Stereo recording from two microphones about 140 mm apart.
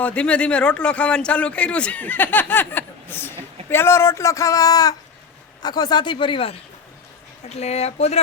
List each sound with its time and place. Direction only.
0.0 s speech: 10° left (ahead or behind); by 6.6 s 40° left (ahead or behind)
7.5 s speech: 50° left (ahead or behind)